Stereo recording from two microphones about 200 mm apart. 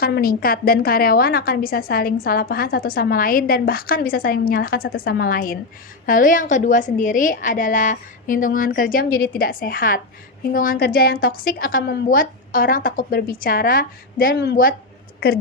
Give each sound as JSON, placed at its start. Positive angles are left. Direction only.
{"t": 0.0, "sound": "a woman's voice", "side_deg": 50}